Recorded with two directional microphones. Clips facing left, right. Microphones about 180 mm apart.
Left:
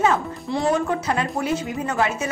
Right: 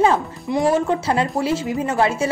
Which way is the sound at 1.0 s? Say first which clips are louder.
Right 3 dB; 30° right (ahead or behind).